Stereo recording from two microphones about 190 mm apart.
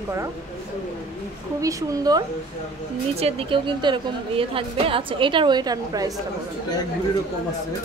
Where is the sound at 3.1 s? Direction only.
30° right (ahead or behind).